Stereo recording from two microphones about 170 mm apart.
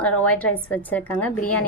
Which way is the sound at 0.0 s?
10° left (ahead or behind).